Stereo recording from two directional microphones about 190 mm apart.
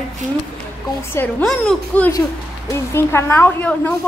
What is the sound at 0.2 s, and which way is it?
Speech, 40° right (ahead or behind).